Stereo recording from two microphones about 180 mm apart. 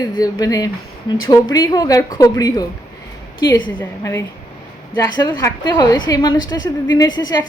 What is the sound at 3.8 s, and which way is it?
Speech, 15° left (ahead or behind).